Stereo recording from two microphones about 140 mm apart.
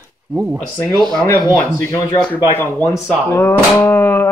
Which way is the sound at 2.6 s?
15° left (ahead or behind).